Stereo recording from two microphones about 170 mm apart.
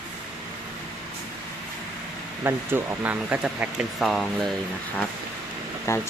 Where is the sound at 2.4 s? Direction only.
15° right (ahead or behind).